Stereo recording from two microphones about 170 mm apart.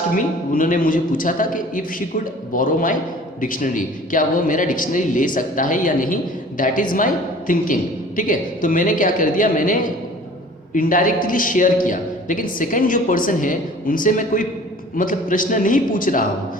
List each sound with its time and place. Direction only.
0.5 s a man's voice: 55° left (ahead or behind)